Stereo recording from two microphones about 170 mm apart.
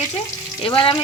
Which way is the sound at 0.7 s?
30° left (ahead or behind).